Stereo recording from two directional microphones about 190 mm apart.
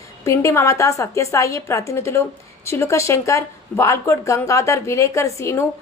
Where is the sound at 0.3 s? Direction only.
15° left (ahead or behind).